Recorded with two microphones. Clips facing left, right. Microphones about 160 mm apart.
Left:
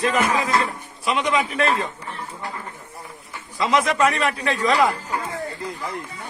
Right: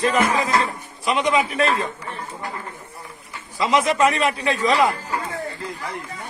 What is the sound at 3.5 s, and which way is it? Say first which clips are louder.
Speech: right 1 dB; 5° right (ahead or behind).